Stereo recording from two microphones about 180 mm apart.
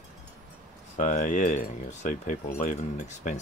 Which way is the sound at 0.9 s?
45° left (ahead or behind).